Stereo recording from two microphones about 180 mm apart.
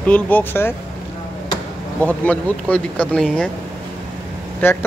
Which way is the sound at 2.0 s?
10° left (ahead or behind).